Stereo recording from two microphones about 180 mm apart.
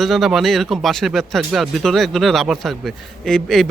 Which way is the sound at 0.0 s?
Centre (ahead or behind).